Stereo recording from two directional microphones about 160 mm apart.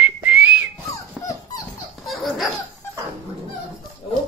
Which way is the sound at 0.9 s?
20° left (ahead or behind).